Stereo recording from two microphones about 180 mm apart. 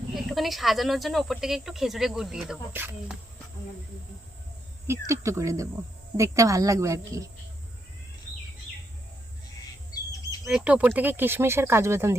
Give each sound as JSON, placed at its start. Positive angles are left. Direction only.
{"t": 0.1, "sound": "speech", "side_deg": 0}
{"t": 4.9, "sound": "speech", "side_deg": -15}
{"t": 10.4, "sound": "speech", "side_deg": -5}